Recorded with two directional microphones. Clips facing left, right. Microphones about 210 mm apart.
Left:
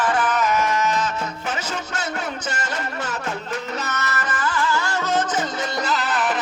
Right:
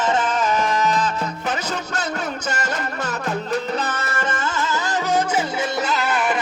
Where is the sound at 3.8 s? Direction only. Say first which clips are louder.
Right 2 dB; 30° right (ahead or behind).